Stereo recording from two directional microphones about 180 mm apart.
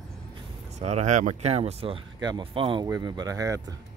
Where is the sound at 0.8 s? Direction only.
40° right (ahead or behind); by 3.8 s 20° right (ahead or behind).